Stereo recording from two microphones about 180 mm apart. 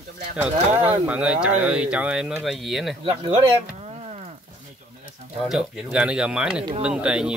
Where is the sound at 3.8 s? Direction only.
35° right (ahead or behind).